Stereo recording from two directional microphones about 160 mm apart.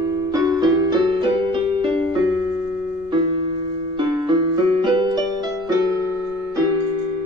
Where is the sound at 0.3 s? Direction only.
25° right (ahead or behind).